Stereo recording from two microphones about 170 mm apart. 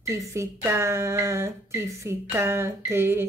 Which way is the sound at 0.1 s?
15° right (ahead or behind).